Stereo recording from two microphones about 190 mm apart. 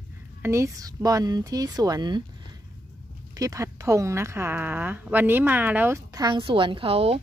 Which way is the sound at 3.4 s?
15° right (ahead or behind).